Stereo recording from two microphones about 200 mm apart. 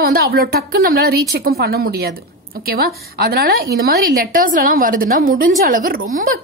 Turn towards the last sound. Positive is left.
turn(degrees=-45)  # may be behind; listen again after turning